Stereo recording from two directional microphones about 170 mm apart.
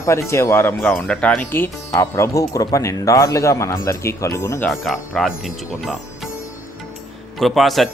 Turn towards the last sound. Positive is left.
turn(degrees=0)  # may be behind; listen again after turning